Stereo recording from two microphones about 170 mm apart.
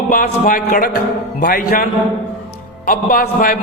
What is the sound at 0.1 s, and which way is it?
A man's voice, 55° left (ahead or behind).